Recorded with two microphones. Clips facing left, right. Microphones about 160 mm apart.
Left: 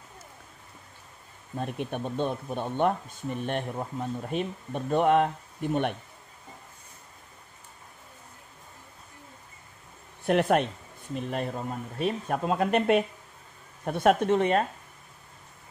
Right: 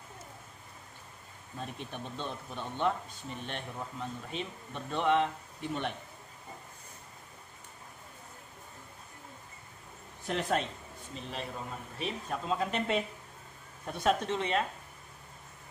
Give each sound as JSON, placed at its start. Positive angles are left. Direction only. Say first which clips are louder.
{"t": 1.6, "sound": "speech", "louder": "left 9 dB", "side_deg": 60}
{"t": 10.2, "sound": "speech", "louder": "left 9 dB", "side_deg": 60}